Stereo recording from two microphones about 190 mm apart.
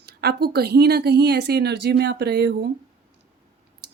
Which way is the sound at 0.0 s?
60° right (ahead or behind).